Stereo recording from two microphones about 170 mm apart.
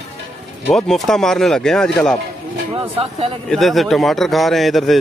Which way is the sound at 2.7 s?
35° right (ahead or behind).